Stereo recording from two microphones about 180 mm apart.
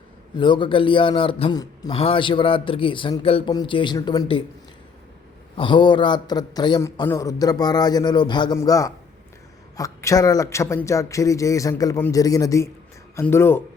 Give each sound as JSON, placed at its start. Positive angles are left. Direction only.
{"t": 0.3, "sound": "a man's voice", "side_deg": 25}
{"t": 5.5, "sound": "a man's voice", "side_deg": 25}